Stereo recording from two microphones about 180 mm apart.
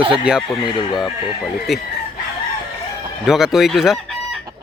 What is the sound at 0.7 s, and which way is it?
Speech, 25° left (ahead or behind).